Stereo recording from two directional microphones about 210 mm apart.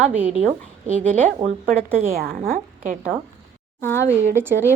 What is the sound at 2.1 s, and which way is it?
A woman's voice, 45° right (ahead or behind).